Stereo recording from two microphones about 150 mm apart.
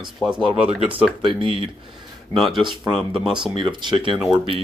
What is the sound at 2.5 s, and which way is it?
Speech, 30° right (ahead or behind).